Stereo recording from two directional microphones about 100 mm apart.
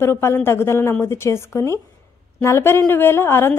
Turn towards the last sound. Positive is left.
turn(degrees=25)  # may be behind; listen again after turning